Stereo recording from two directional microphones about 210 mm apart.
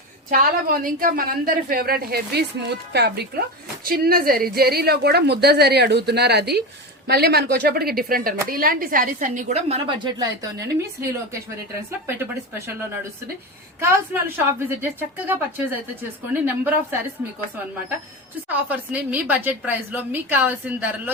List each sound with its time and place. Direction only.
0.3 s a woman's voice: 40° right (ahead or behind); by 11.1 s 15° right (ahead or behind)
15.3 s a woman's voice: 10° right (ahead or behind)
18.4 s a woman's voice: 5° right (ahead or behind)